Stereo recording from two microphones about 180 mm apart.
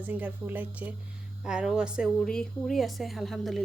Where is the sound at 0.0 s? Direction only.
10° right (ahead or behind).